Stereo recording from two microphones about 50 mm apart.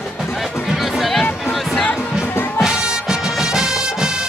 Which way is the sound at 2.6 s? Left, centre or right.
Centre.